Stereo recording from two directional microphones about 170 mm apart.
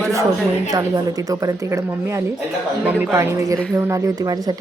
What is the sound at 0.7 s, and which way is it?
A woman's voice, 20° right (ahead or behind).